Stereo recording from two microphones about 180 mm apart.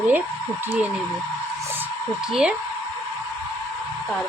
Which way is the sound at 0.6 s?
10° right (ahead or behind).